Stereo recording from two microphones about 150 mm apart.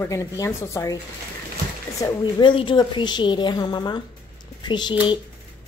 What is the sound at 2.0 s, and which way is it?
A woman's voice, 30° left (ahead or behind).